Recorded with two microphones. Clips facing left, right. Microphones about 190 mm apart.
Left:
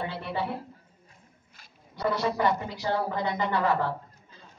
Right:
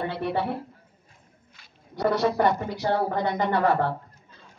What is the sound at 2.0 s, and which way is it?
A woman's voice, 55° right (ahead or behind).